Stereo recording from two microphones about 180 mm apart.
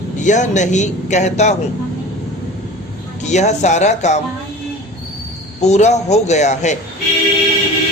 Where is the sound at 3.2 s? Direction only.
40° left (ahead or behind).